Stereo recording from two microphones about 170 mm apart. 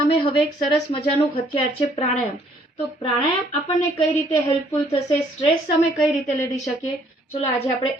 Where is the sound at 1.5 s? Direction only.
40° left (ahead or behind).